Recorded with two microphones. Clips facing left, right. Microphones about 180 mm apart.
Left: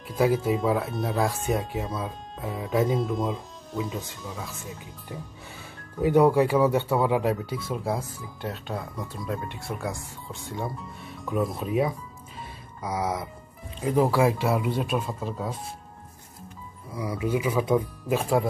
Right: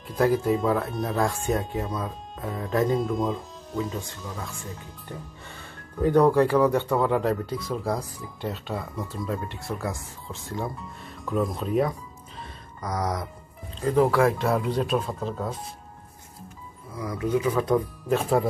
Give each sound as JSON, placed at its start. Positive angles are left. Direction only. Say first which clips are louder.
{"t": 0.1, "sound": "speech", "louder": "right 1 dB", "side_deg": 0}
{"t": 12.4, "sound": "a sound", "louder": "even", "side_deg": 5}
{"t": 13.7, "sound": "speech", "louder": "right 1 dB", "side_deg": 10}
{"t": 16.9, "sound": "speech", "louder": "right 1 dB", "side_deg": 10}